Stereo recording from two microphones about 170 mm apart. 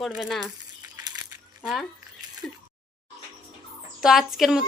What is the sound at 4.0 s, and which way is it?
Speech, centre (ahead or behind).